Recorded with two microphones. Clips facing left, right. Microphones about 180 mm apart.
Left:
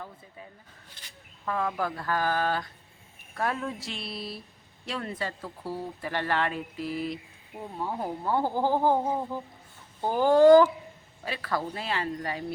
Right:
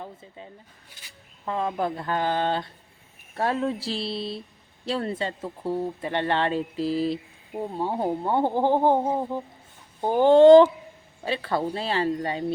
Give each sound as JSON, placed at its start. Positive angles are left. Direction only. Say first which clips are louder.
{"t": 1.5, "sound": "speech", "louder": "right 3 dB", "side_deg": -25}